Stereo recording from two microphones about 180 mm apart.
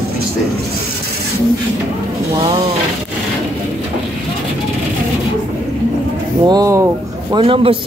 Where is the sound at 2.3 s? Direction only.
30° right (ahead or behind).